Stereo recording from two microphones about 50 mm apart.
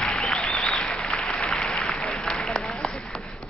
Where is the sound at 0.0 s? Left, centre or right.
Centre.